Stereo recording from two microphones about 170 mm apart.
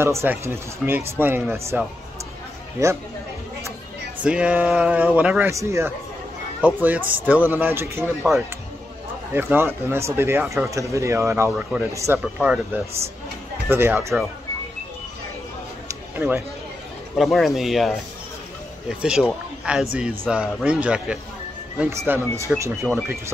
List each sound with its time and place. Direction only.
0.0 s speech: 15° right (ahead or behind)
2.8 s speech: 15° right (ahead or behind)
4.2 s speech: 5° right (ahead or behind)
9.3 s speech: 15° right (ahead or behind)
12.2 s speech: 5° right (ahead or behind)
15.9 s a sound: 15° right (ahead or behind)
17.2 s speech: centre (ahead or behind); by 23.3 s 15° right (ahead or behind)